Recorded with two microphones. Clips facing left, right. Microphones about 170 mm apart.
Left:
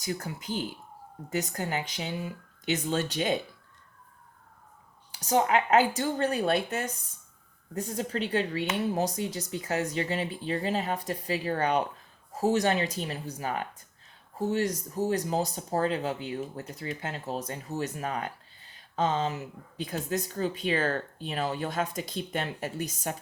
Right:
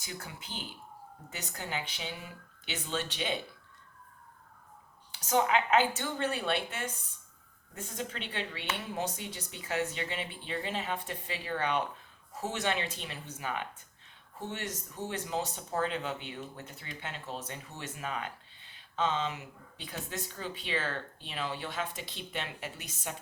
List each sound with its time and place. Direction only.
0.0 s speech: 40° left (ahead or behind)
5.1 s speech: 35° left (ahead or behind)